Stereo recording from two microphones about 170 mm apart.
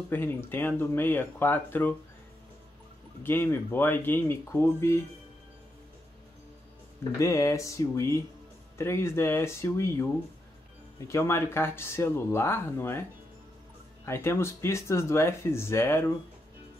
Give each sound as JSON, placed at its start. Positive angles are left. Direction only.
{"t": 0.1, "sound": "speech", "side_deg": 10}
{"t": 3.3, "sound": "speech", "side_deg": 15}
{"t": 7.2, "sound": "speech", "side_deg": 20}
{"t": 11.1, "sound": "speech", "side_deg": 15}
{"t": 14.0, "sound": "speech", "side_deg": 15}